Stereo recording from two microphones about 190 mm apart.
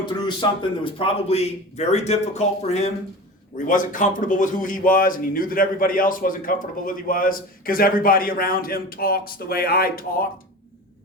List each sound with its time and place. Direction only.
0.0 s a man's voice: 25° left (ahead or behind); by 10.2 s 50° left (ahead or behind)